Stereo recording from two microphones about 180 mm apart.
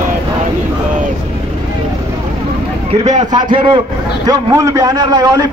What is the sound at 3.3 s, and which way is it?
Speech, 25° right (ahead or behind).